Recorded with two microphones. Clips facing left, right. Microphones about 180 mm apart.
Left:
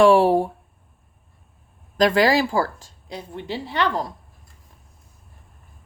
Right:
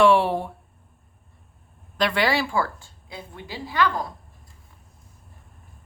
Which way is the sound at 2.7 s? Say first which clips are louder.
Left 5 dB; 90° left.